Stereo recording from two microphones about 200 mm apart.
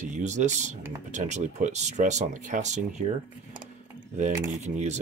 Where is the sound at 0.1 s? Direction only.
35° right (ahead or behind).